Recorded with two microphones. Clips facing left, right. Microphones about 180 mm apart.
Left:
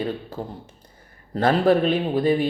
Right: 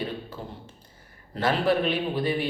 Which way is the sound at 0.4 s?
45° left (ahead or behind).